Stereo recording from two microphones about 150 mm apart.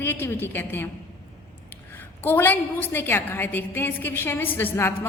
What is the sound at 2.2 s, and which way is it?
A woman's voice, 15° left (ahead or behind).